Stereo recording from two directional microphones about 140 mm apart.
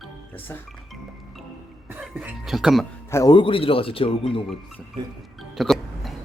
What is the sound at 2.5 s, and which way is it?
Speech, centre (ahead or behind).